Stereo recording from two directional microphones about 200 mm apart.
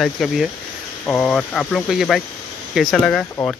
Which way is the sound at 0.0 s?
Centre (ahead or behind).